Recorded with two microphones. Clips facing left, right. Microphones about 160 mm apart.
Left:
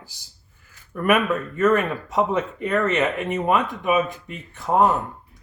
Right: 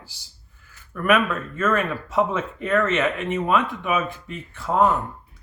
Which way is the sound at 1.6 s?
15° left (ahead or behind).